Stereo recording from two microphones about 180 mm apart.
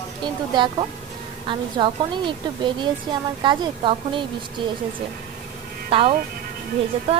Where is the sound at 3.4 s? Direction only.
25° right (ahead or behind).